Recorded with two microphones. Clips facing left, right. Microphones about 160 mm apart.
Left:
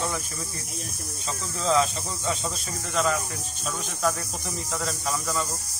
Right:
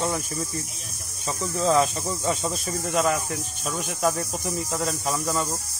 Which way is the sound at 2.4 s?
10° right (ahead or behind).